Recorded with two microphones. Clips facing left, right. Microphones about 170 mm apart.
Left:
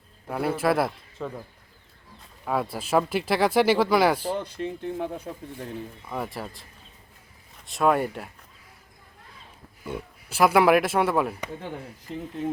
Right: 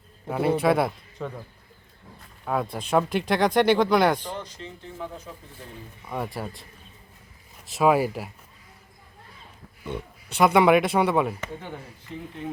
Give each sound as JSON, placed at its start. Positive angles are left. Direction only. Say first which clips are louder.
{"t": 0.3, "sound": "speech", "louder": "right 3 dB", "side_deg": 0}
{"t": 2.4, "sound": "speech", "louder": "even", "side_deg": 0}
{"t": 4.4, "sound": "speech", "louder": "left 10 dB", "side_deg": 60}
{"t": 6.1, "sound": "speech", "louder": "right 3 dB", "side_deg": 0}
{"t": 7.7, "sound": "speech", "louder": "right 2 dB", "side_deg": -5}
{"t": 9.8, "sound": "speech", "louder": "right 1 dB", "side_deg": 5}